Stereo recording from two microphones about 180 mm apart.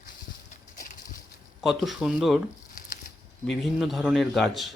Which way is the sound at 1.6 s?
Centre (ahead or behind).